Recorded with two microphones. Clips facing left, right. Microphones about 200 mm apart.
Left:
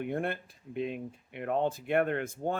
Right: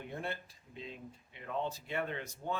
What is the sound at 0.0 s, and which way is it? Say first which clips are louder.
Speech: left 8 dB; 60° left (ahead or behind).